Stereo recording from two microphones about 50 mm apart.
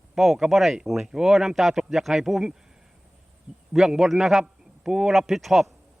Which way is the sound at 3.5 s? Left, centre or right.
Right.